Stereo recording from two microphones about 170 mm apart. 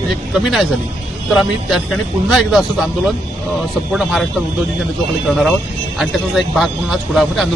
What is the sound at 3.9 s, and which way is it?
A man's voice, centre (ahead or behind).